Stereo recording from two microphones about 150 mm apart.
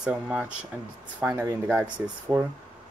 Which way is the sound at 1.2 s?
20° right (ahead or behind).